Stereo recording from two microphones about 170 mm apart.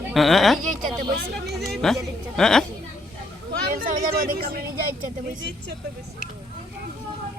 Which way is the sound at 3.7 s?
55° right (ahead or behind).